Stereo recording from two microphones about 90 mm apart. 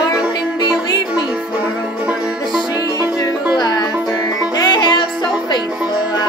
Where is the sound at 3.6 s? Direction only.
50° left (ahead or behind).